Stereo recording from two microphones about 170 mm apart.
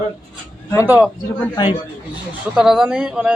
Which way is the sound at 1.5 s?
25° left (ahead or behind).